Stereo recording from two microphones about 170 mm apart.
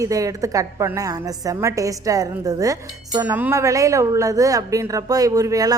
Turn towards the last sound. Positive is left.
turn(degrees=-20)  # may be behind; listen again after turning